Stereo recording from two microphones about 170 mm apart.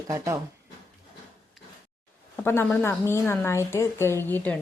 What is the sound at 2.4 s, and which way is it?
A woman's voice, 15° left (ahead or behind).